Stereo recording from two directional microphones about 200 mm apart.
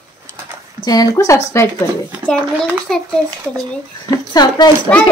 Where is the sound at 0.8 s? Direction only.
20° left (ahead or behind).